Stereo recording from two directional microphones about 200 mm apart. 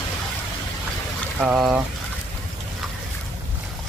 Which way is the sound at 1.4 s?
5° right (ahead or behind).